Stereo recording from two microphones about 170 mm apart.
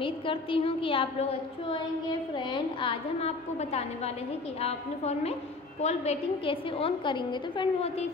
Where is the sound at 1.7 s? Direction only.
30° left (ahead or behind).